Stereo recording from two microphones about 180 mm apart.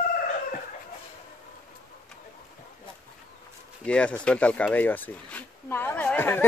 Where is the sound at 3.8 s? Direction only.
5° left (ahead or behind).